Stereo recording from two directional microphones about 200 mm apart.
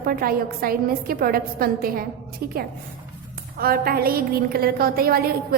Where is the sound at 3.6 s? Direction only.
50° right (ahead or behind).